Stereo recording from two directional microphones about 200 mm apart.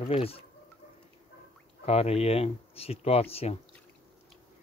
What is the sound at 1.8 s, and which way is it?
Speech, 30° left (ahead or behind).